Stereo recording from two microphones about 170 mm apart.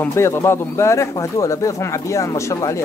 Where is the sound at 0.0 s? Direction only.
15° left (ahead or behind).